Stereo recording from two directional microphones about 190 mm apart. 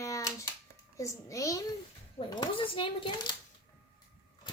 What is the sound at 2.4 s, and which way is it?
Speech, 25° left (ahead or behind).